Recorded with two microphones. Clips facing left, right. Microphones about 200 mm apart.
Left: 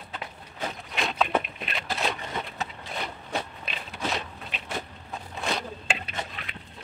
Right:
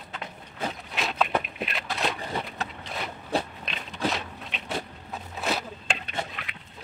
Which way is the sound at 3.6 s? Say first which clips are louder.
Right 3 dB; 5° left (ahead or behind).